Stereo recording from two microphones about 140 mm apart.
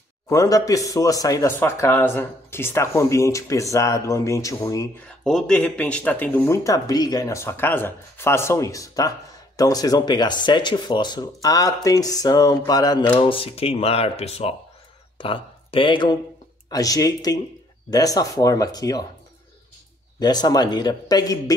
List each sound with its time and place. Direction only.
0.3 s speech: 25° left (ahead or behind)
5.2 s speech: 5° left (ahead or behind); by 13.0 s 30° left (ahead or behind)
13.1 s speech: 40° left (ahead or behind)
20.2 s speech: 30° left (ahead or behind)